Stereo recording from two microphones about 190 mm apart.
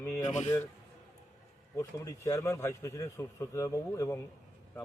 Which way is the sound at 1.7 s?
15° left (ahead or behind).